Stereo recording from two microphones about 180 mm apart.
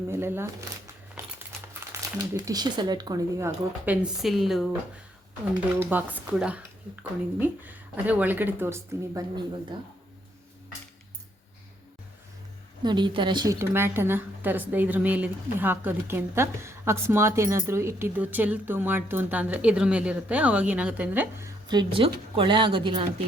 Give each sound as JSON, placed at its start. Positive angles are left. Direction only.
{"t": 0.1, "sound": "a woman's voice", "side_deg": -15}
{"t": 1.2, "sound": "a sound", "side_deg": -15}
{"t": 1.8, "sound": "speech", "side_deg": -20}
{"t": 4.0, "sound": "speech", "side_deg": 0}
{"t": 5.8, "sound": "a woman's voice", "side_deg": -10}
{"t": 12.8, "sound": "a woman's voice", "side_deg": -25}